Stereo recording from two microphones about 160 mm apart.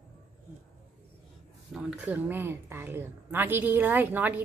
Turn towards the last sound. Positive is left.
turn(degrees=-10)  # may be behind; listen again after turning